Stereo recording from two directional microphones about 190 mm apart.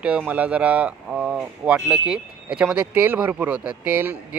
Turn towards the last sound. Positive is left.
turn(degrees=-10)  # may be behind; listen again after turning